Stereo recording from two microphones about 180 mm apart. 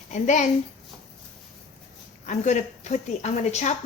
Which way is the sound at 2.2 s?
40° left (ahead or behind).